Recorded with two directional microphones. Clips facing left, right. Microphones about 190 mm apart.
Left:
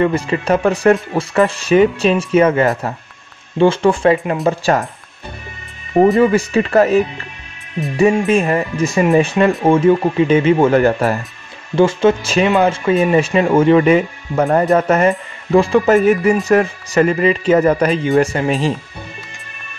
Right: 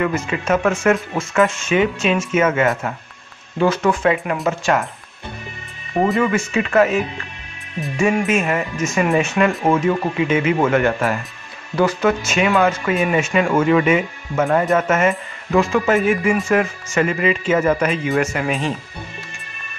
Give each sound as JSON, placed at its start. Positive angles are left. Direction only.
{"t": 0.0, "sound": "speech", "side_deg": 35}
{"t": 6.2, "sound": "speech", "side_deg": 35}
{"t": 8.0, "sound": "speech", "side_deg": 35}